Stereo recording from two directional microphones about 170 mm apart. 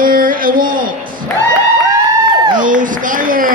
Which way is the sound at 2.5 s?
50° right (ahead or behind).